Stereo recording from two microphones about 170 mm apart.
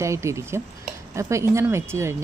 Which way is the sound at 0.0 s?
15° right (ahead or behind).